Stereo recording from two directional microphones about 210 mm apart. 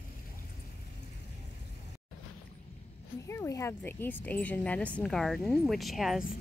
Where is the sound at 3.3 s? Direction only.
15° left (ahead or behind).